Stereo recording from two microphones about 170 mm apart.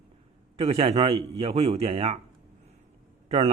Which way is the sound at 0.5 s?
35° right (ahead or behind).